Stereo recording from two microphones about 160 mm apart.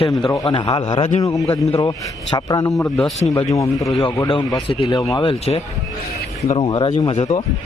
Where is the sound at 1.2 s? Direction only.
20° left (ahead or behind).